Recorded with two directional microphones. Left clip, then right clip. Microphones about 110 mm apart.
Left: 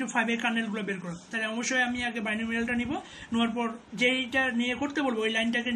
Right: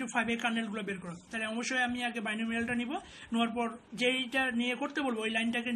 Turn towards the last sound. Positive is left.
turn(degrees=-35)  # may be behind; listen again after turning